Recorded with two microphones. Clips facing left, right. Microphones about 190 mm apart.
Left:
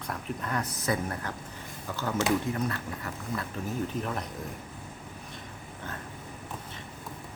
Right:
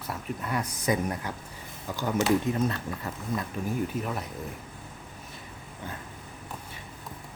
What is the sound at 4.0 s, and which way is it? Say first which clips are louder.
Speech: right 1 dB; 5° right (ahead or behind).